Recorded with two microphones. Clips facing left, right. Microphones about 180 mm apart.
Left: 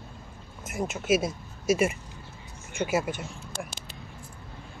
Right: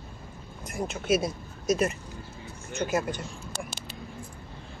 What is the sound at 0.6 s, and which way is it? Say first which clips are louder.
Speech: left 1 dB; 5° left (ahead or behind).